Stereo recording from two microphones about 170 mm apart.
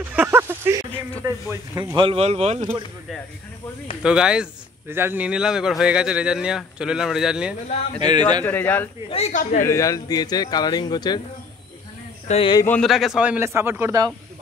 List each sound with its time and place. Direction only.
0.1 s a sound: 10° right (ahead or behind)
1.2 s a man's voice: 15° right (ahead or behind)
2.0 s speech: 35° right (ahead or behind)
4.0 s speech: 5° right (ahead or behind)
8.4 s a man's voice: 10° left (ahead or behind)
9.1 s speech: 40° left (ahead or behind)
9.6 s speech: 20° left (ahead or behind)
12.3 s speech: 35° left (ahead or behind)
12.6 s a man's voice: 5° left (ahead or behind); by 14.0 s 15° right (ahead or behind)